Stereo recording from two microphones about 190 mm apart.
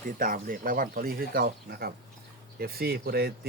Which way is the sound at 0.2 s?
45° right (ahead or behind).